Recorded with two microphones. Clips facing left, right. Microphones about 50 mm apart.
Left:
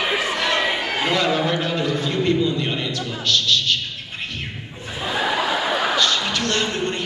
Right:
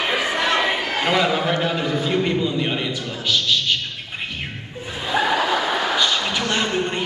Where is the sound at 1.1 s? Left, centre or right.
Centre.